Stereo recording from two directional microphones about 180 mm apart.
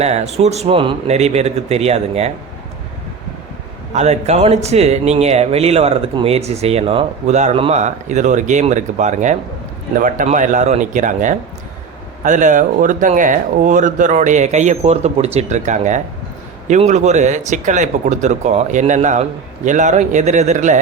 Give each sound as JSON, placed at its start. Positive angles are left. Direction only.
{"t": 0.0, "sound": "speech", "side_deg": -40}
{"t": 3.9, "sound": "speech", "side_deg": -40}